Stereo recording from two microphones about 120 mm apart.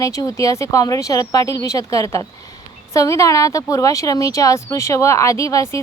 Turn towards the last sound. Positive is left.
turn(degrees=30)  # may be behind; listen again after turning